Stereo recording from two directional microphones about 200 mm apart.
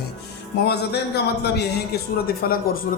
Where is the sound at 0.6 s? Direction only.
55° left (ahead or behind).